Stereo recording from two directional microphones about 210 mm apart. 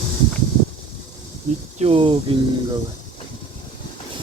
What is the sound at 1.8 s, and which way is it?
Speech, 25° right (ahead or behind).